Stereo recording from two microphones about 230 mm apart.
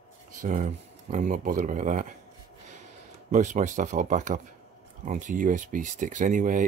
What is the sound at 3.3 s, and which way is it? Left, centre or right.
Speech, right.